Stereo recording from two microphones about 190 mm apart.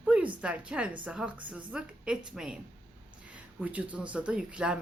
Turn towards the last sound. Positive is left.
turn(degrees=-5)  # may be behind; listen again after turning